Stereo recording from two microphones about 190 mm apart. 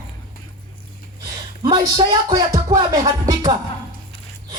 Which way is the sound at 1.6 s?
20° right (ahead or behind).